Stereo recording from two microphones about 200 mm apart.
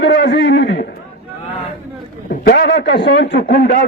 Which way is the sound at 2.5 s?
60° left (ahead or behind).